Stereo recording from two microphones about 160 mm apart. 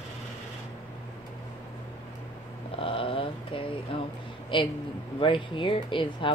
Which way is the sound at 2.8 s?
35° left (ahead or behind).